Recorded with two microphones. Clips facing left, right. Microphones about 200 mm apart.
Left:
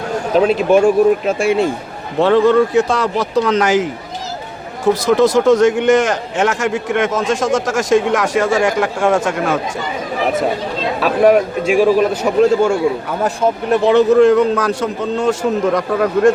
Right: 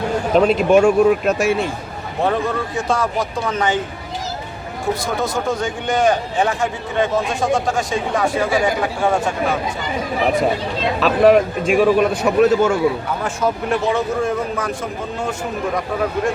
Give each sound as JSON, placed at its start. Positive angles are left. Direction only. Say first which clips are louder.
{"t": 0.3, "sound": "speech", "louder": "left 1 dB", "side_deg": 5}
{"t": 2.2, "sound": "a man's voice", "louder": "left 9 dB", "side_deg": 85}
{"t": 5.0, "sound": "a man's voice", "louder": "left 13 dB", "side_deg": 80}
{"t": 11.0, "sound": "a man's voice", "louder": "left 1 dB", "side_deg": 10}
{"t": 13.2, "sound": "speech", "louder": "left 5 dB", "side_deg": 40}
{"t": 13.8, "sound": "a man's voice", "louder": "left 13 dB", "side_deg": 70}